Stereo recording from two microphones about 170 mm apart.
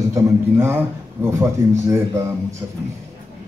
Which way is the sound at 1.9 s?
15° right (ahead or behind).